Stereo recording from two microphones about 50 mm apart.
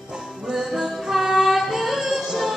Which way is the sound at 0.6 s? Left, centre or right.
Centre.